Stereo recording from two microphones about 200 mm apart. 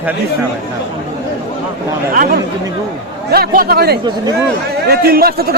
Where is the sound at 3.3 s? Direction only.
50° right (ahead or behind).